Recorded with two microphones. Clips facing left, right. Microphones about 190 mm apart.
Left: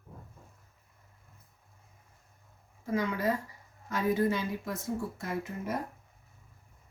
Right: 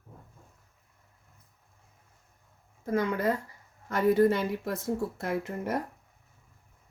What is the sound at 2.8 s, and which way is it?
A woman's voice, 55° right (ahead or behind).